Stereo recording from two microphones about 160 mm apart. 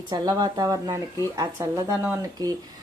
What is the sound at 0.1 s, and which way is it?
Speech, 25° right (ahead or behind).